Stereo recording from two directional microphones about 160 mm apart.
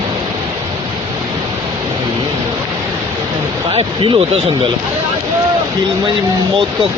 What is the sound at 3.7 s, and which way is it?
Speech, 35° right (ahead or behind).